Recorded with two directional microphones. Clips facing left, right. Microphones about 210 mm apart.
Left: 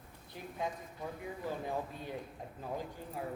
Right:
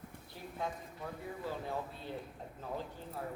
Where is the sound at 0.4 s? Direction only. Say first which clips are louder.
Left 2 dB; 15° left (ahead or behind).